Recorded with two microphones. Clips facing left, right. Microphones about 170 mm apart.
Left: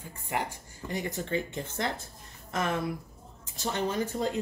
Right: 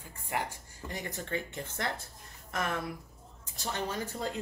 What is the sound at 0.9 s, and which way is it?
A woman's voice, 25° left (ahead or behind).